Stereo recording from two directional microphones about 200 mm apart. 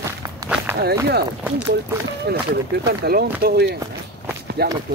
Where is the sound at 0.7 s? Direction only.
10° right (ahead or behind).